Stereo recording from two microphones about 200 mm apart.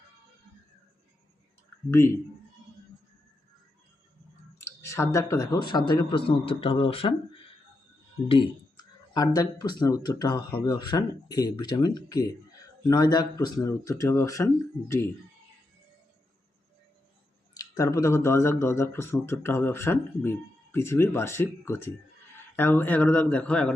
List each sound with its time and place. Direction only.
2.0 s speech: 15° left (ahead or behind)
4.5 s speech: 15° left (ahead or behind)
9.1 s speech: 20° left (ahead or behind)
17.5 s speech: 15° left (ahead or behind)